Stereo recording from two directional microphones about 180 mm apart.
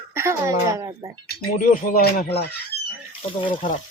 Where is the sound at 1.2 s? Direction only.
50° left (ahead or behind).